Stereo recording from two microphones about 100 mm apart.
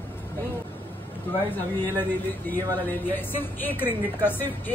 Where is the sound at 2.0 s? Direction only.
20° left (ahead or behind).